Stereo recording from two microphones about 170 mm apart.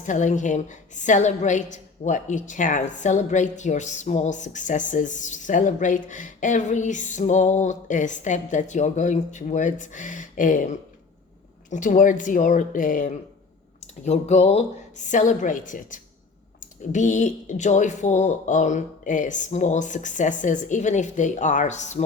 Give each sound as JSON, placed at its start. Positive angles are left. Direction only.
{"t": 0.0, "sound": "a woman's voice", "side_deg": 45}
{"t": 14.0, "sound": "a woman's voice", "side_deg": 40}